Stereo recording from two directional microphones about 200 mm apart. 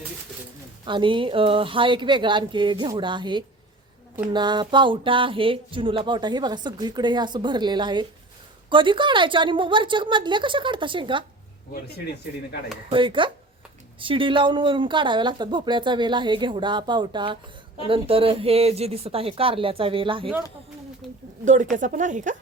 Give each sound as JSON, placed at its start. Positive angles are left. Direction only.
{"t": 0.9, "sound": "speech", "side_deg": -25}
{"t": 11.7, "sound": "speech", "side_deg": 55}
{"t": 12.9, "sound": "speech", "side_deg": -25}
{"t": 21.4, "sound": "a woman's voice", "side_deg": -40}